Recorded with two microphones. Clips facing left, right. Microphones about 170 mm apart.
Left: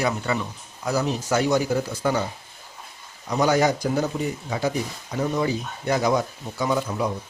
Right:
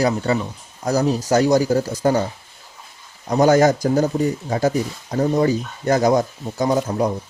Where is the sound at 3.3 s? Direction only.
45° right (ahead or behind).